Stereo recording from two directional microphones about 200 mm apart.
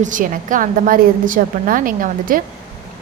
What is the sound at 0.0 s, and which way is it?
A woman's voice, 40° right (ahead or behind).